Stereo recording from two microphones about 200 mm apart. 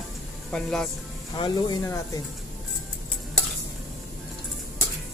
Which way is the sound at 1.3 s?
20° left (ahead or behind).